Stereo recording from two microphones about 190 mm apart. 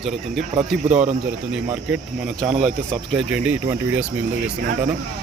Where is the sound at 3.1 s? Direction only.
10° right (ahead or behind).